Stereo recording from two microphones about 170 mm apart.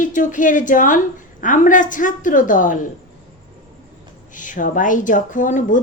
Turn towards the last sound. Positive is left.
turn(degrees=50)  # may be behind; listen again after turning